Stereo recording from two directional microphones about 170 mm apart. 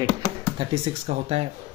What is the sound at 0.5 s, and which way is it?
Speech, 35° right (ahead or behind).